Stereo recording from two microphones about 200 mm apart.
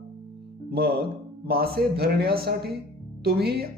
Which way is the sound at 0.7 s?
50° right (ahead or behind).